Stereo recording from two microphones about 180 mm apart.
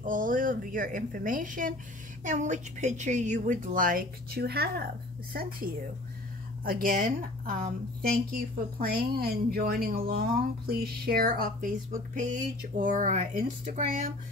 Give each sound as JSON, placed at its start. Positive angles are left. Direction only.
{"t": 0.0, "sound": "a woman's voice", "side_deg": -50}